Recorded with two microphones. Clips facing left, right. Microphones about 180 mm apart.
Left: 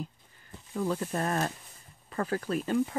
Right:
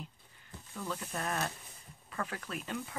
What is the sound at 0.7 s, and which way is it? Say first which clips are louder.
Speech: left 9 dB; 40° left (ahead or behind).